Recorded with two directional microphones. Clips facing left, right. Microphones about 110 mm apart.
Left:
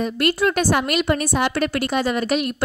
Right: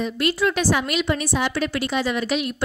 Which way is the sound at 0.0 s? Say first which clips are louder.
Left 2 dB; 50° left (ahead or behind).